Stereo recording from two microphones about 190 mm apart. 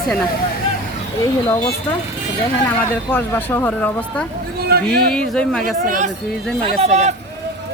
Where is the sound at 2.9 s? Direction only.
10° left (ahead or behind).